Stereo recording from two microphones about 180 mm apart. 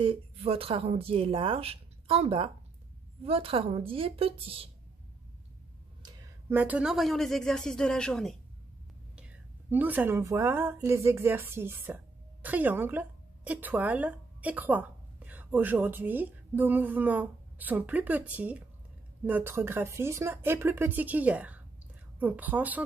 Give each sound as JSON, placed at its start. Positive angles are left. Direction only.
{"t": 0.0, "sound": "a woman's voice", "side_deg": -30}
{"t": 6.5, "sound": "speech", "side_deg": -10}
{"t": 9.7, "sound": "speech", "side_deg": -10}